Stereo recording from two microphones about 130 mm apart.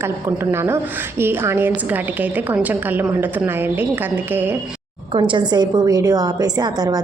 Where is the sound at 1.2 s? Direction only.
15° right (ahead or behind).